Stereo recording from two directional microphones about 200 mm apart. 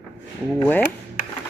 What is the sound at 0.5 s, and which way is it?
Speech, 10° left (ahead or behind).